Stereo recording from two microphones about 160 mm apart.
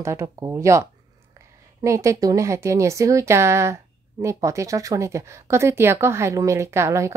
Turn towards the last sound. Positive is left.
turn(degrees=-20)  # may be behind; listen again after turning